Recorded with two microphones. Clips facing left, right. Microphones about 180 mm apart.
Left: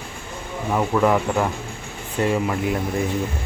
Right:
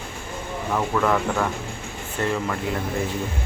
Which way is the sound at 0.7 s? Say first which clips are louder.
Left 3 dB; 15° left (ahead or behind).